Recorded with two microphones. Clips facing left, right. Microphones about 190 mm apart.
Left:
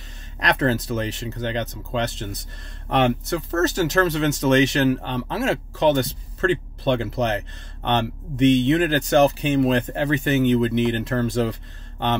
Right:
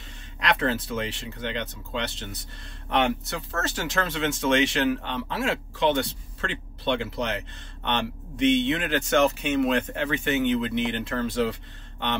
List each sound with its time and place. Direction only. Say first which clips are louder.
0.4 s speech: left 4 dB; 40° left (ahead or behind)